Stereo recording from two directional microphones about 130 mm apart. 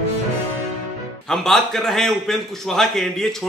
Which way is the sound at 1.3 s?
Centre (ahead or behind).